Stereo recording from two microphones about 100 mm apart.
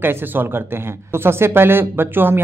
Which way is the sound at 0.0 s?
20° right (ahead or behind).